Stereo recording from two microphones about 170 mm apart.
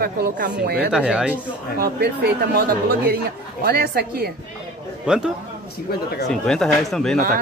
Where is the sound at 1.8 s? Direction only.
65° right (ahead or behind).